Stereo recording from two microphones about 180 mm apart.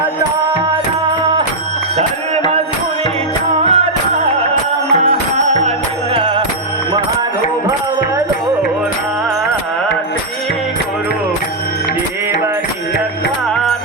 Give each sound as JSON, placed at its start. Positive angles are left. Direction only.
{"t": 3.6, "sound": "music", "side_deg": -35}
{"t": 6.1, "sound": "music", "side_deg": -25}